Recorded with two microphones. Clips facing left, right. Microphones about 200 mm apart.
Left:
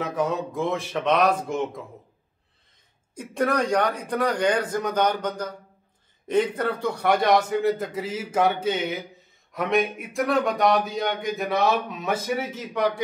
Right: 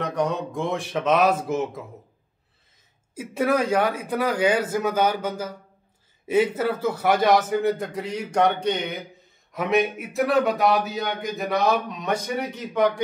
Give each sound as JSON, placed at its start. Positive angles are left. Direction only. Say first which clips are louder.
{"t": 0.0, "sound": "speech", "louder": "right 1 dB", "side_deg": 5}
{"t": 3.2, "sound": "speech", "louder": "right 2 dB", "side_deg": -5}